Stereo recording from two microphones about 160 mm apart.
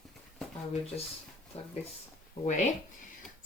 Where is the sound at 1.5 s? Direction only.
40° left (ahead or behind).